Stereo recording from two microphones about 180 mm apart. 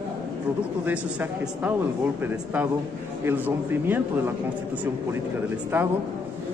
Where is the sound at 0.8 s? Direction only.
10° right (ahead or behind).